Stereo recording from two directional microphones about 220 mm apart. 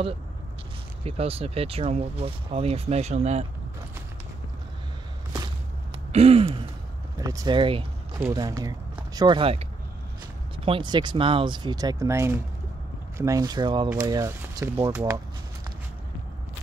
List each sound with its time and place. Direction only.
1.0 s speech: 25° right (ahead or behind)
6.1 s speech: 25° right (ahead or behind)
7.2 s speech: 15° right (ahead or behind)